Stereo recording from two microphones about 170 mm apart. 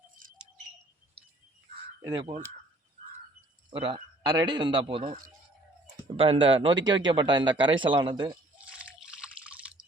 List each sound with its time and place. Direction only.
2.0 s speech: 20° right (ahead or behind)
3.7 s a man's voice: 30° right (ahead or behind)
6.1 s a man's voice: 30° right (ahead or behind)
8.5 s drip: 5° right (ahead or behind)